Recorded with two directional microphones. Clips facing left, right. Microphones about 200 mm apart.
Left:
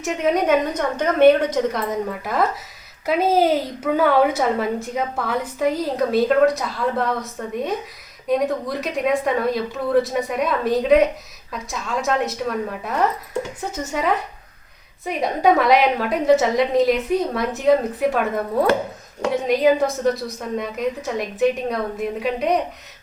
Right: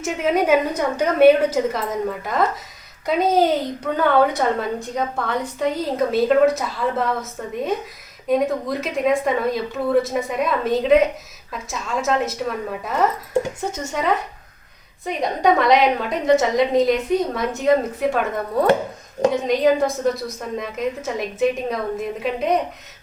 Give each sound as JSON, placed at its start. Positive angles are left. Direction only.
{"t": 0.0, "sound": "a woman's voice", "side_deg": 0}
{"t": 19.5, "sound": "a woman's voice", "side_deg": 0}